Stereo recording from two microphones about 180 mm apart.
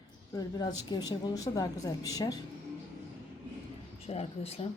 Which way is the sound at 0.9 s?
20° left (ahead or behind).